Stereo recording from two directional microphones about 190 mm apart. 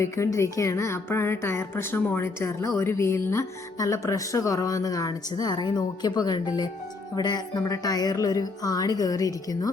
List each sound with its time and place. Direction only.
0.0 s a woman's voice: 15° left (ahead or behind)